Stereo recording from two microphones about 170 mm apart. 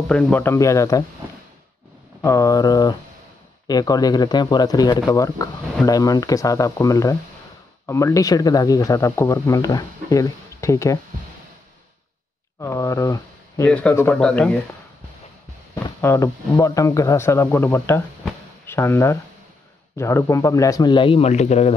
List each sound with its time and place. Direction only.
0.1 s speech: 5° left (ahead or behind)
2.2 s speech: 20° left (ahead or behind)
12.5 s speech: 20° left (ahead or behind)
15.7 s speech: 15° left (ahead or behind); by 21.7 s 40° left (ahead or behind)